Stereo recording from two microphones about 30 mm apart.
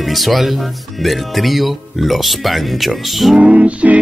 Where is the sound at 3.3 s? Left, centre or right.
Right.